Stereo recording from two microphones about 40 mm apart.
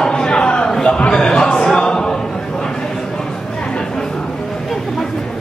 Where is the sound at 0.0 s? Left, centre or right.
Left.